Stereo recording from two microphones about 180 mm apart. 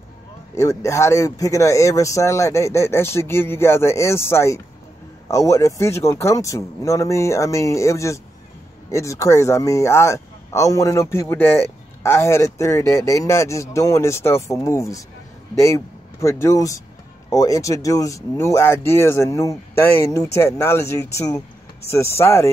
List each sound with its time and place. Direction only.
0.6 s speech: 15° left (ahead or behind)